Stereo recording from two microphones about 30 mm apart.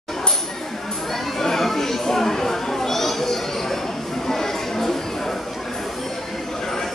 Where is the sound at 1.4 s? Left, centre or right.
Centre.